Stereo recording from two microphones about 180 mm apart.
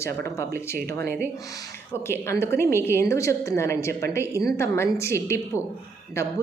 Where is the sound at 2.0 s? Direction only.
15° left (ahead or behind).